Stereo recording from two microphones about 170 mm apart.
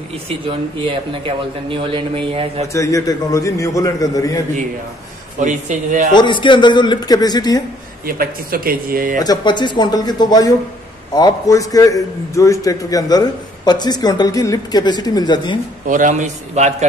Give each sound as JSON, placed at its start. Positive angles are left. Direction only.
{"t": 0.5, "sound": "a man's voice", "side_deg": -30}
{"t": 2.7, "sound": "a man's voice", "side_deg": 20}
{"t": 5.4, "sound": "a man's voice", "side_deg": -45}
{"t": 6.1, "sound": "a man's voice", "side_deg": 30}
{"t": 8.2, "sound": "speech", "side_deg": -60}
{"t": 9.2, "sound": "a man's voice", "side_deg": 25}
{"t": 15.9, "sound": "a man's voice", "side_deg": -50}